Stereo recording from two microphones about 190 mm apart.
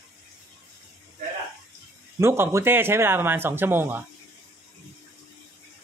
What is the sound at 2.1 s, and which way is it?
Speech, 15° right (ahead or behind).